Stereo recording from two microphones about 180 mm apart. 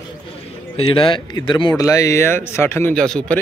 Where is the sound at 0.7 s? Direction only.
30° left (ahead or behind); by 3.4 s 5° left (ahead or behind).